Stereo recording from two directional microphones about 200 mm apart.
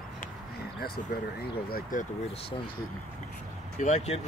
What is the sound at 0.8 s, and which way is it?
Speech, 50° left (ahead or behind).